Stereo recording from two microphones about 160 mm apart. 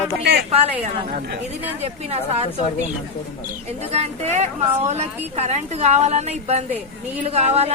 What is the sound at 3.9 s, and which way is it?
A woman's voice, 40° right (ahead or behind).